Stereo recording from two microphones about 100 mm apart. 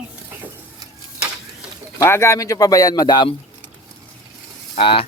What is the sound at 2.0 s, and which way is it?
Speech, 25° left (ahead or behind).